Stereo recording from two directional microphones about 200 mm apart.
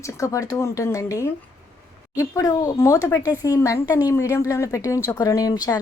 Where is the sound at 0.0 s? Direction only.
15° left (ahead or behind).